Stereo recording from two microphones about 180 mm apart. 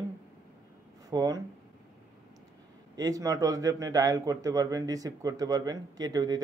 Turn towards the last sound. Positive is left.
turn(degrees=-20)  # may be behind; listen again after turning